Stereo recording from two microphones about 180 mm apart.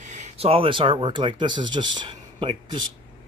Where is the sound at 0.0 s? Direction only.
40° right (ahead or behind).